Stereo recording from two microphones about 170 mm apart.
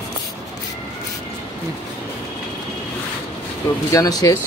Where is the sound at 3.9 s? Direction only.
20° left (ahead or behind).